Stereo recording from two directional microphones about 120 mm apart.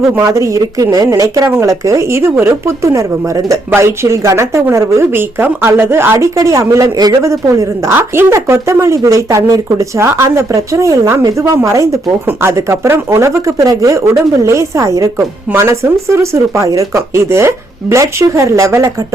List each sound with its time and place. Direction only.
0.3 s a woman's voice: 25° right (ahead or behind)